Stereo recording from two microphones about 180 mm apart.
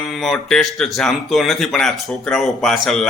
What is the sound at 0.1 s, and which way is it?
Speech, centre (ahead or behind).